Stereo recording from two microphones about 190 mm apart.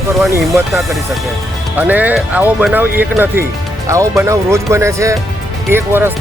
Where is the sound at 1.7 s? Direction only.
10° right (ahead or behind).